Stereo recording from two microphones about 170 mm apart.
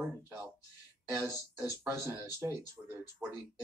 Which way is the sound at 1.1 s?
15° right (ahead or behind).